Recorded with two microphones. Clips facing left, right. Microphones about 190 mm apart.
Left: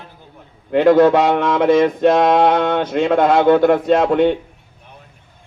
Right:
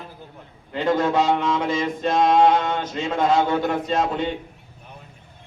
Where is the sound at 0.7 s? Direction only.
65° left (ahead or behind).